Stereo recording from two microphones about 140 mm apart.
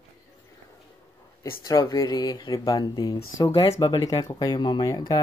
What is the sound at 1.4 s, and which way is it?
Speech, 25° left (ahead or behind).